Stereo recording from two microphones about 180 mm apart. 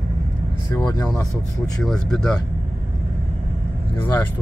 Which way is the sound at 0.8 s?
20° left (ahead or behind).